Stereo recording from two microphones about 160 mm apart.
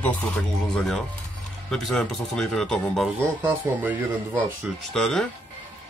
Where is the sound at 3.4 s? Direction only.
10° right (ahead or behind).